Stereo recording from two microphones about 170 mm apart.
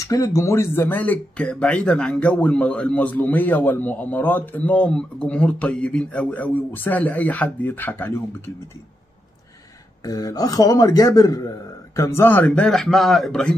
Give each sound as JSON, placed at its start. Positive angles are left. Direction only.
{"t": 0.0, "sound": "speech", "side_deg": 20}
{"t": 10.0, "sound": "a man's voice", "side_deg": 20}